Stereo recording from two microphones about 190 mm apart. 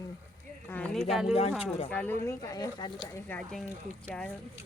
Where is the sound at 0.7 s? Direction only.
5° left (ahead or behind).